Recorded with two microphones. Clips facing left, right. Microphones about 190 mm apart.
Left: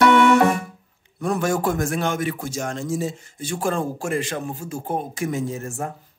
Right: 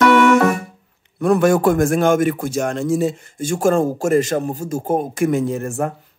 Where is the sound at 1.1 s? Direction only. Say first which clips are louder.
Right 8 dB; 60° right (ahead or behind).